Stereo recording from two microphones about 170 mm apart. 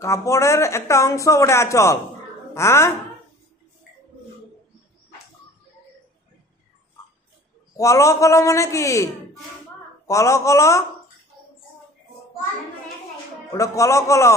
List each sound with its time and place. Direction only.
0.0 s speech: 15° left (ahead or behind)
7.7 s speech: 20° left (ahead or behind)
13.5 s speech: 20° left (ahead or behind)